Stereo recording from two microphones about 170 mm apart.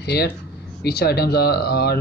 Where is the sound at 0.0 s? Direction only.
75° left (ahead or behind).